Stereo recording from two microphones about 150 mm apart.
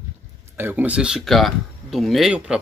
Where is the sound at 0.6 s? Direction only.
15° right (ahead or behind).